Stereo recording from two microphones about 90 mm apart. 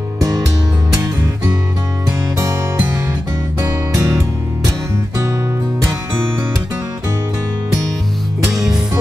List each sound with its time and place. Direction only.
2.0 s music: 35° right (ahead or behind)
3.6 s music: 35° right (ahead or behind)